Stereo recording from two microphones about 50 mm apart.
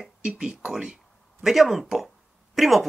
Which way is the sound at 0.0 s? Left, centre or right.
Centre.